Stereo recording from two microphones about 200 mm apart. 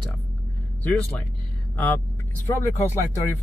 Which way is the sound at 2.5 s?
10° left (ahead or behind).